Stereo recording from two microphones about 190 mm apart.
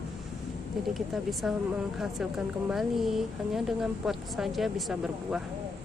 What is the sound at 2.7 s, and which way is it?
A woman's voice, centre (ahead or behind).